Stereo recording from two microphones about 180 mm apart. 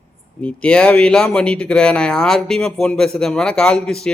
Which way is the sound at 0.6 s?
5° left (ahead or behind).